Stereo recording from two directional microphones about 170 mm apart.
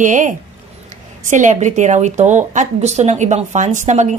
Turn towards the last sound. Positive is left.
turn(degrees=-45)  # may be behind; listen again after turning